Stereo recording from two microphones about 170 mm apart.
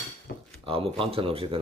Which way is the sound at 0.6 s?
30° right (ahead or behind).